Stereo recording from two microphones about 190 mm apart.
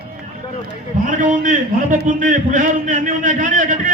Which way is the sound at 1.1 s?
40° right (ahead or behind).